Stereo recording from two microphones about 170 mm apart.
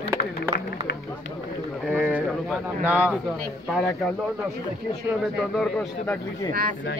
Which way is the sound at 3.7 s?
5° left (ahead or behind).